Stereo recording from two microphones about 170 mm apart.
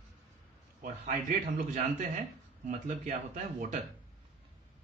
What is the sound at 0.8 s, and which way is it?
Speech, 50° right (ahead or behind).